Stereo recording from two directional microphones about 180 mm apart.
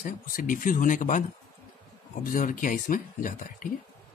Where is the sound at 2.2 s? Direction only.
50° left (ahead or behind).